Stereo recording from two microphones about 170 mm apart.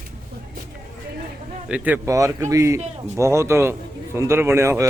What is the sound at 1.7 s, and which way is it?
Speech, 10° right (ahead or behind).